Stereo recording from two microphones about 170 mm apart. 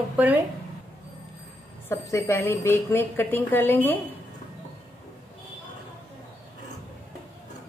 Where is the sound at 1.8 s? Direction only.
15° left (ahead or behind).